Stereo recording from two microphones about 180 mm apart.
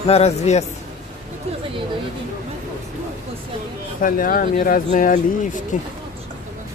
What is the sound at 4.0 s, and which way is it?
Speech, 50° left (ahead or behind).